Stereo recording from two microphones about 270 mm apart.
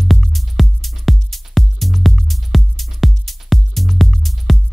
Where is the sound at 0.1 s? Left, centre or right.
Centre.